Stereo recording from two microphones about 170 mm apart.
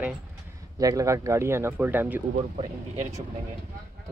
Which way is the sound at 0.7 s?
20° right (ahead or behind).